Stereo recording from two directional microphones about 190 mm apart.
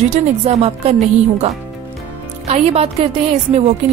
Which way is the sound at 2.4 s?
35° right (ahead or behind).